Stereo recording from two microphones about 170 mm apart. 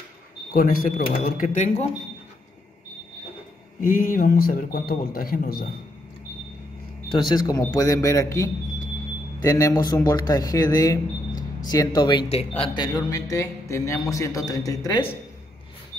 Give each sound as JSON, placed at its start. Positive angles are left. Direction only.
{"t": 0.5, "sound": "speech", "side_deg": 55}
{"t": 3.8, "sound": "speech", "side_deg": 55}
{"t": 7.1, "sound": "speech", "side_deg": 25}